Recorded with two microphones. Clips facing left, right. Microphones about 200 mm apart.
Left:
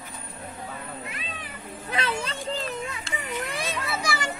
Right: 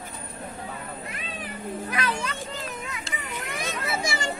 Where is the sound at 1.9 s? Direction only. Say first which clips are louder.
Left 2 dB; 25° left (ahead or behind).